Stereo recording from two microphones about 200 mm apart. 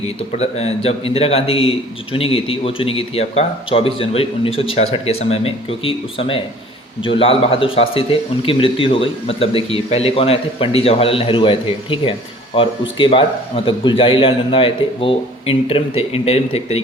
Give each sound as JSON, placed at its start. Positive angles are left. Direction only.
{"t": 0.3, "sound": "speech", "side_deg": 30}